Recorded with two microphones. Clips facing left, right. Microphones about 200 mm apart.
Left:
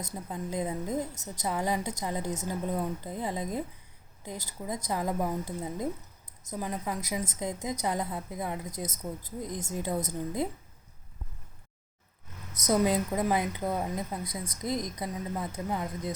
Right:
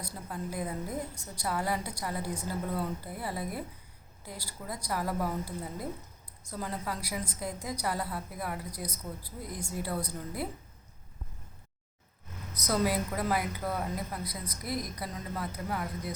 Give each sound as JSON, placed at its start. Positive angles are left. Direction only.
{"t": 0.1, "sound": "a woman's voice", "side_deg": 20}
{"t": 12.6, "sound": "a woman's voice", "side_deg": 20}